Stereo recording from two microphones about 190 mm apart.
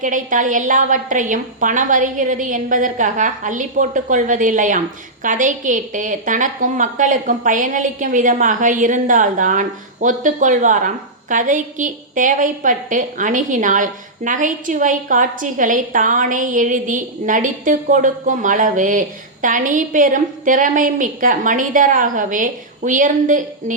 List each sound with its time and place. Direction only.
0.0 s a woman's voice: 45° right (ahead or behind)